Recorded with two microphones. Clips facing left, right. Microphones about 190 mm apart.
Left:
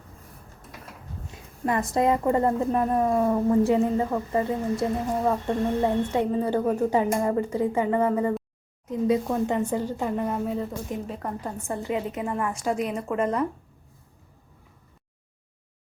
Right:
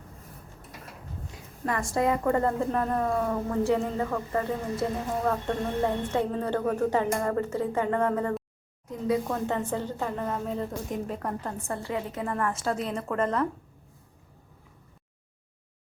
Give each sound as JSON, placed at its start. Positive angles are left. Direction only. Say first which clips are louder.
{"t": 1.6, "sound": "a woman's voice", "louder": "left 3 dB", "side_deg": 20}
{"t": 8.9, "sound": "a woman's voice", "louder": "left 4 dB", "side_deg": 20}